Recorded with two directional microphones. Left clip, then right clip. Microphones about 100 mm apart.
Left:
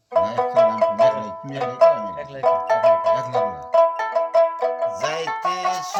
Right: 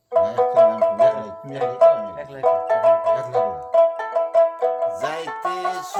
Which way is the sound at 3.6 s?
25° left (ahead or behind).